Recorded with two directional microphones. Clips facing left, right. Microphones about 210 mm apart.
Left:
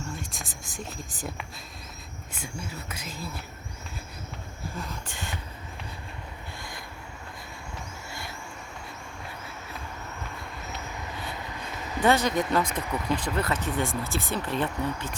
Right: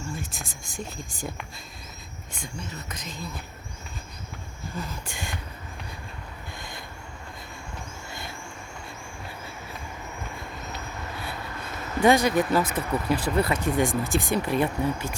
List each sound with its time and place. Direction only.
0.2 s speech: centre (ahead or behind)
4.8 s speech: 5° right (ahead or behind)
6.6 s vehicle: 25° right (ahead or behind)
12.0 s speech: 10° right (ahead or behind)